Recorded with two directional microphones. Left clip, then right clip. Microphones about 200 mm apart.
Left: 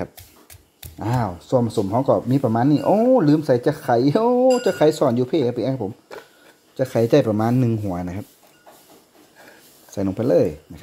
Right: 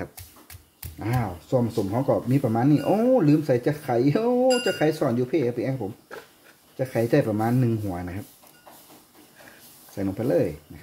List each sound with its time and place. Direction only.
0.9 s speech: 20° left (ahead or behind)
6.8 s speech: 30° left (ahead or behind)
9.9 s speech: 30° left (ahead or behind)